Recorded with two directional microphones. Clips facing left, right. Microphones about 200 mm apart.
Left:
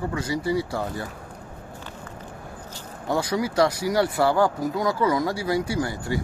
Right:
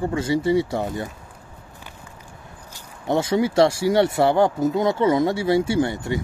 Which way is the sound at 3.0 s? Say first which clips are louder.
Right 4 dB; 25° right (ahead or behind).